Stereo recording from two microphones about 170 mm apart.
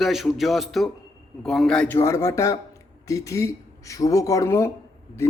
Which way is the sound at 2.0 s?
15° left (ahead or behind).